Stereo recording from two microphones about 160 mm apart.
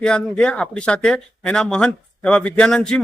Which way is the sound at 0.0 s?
5° left (ahead or behind).